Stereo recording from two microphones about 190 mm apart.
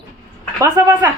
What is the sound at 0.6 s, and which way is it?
Speech, 20° right (ahead or behind).